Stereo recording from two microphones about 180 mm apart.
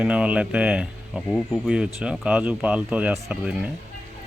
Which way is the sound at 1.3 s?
5° left (ahead or behind).